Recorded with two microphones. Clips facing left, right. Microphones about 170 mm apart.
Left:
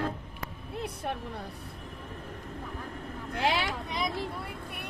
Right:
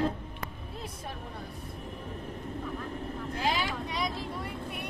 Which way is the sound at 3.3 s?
65° left (ahead or behind).